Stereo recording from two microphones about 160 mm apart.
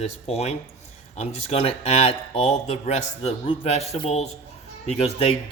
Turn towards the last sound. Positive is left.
turn(degrees=40)  # may be behind; listen again after turning